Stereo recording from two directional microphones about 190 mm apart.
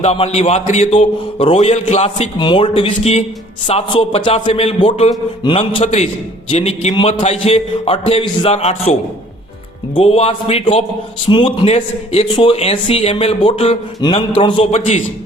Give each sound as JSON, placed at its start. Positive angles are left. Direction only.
{"t": 0.0, "sound": "speech", "side_deg": 35}